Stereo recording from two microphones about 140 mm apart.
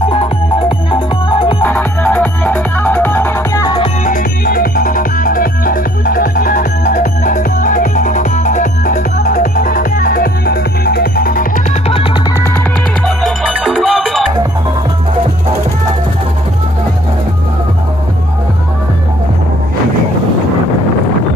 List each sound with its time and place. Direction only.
0.1 s music: 40° left (ahead or behind)
1.6 s music: 10° left (ahead or behind)
4.0 s music: 75° left (ahead or behind)
13.0 s music: 5° left (ahead or behind)